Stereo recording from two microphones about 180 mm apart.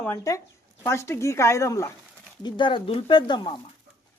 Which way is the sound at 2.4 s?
25° left (ahead or behind).